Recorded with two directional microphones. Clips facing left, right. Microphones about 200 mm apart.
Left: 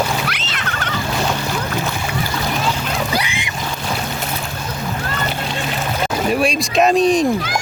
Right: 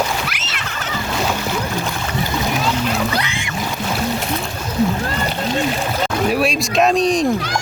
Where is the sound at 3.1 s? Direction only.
15° left (ahead or behind).